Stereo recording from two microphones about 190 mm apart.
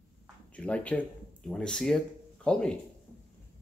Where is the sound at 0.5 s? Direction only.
5° left (ahead or behind).